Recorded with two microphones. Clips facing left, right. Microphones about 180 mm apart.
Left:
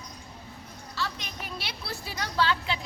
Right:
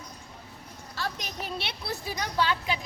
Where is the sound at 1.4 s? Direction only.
30° right (ahead or behind).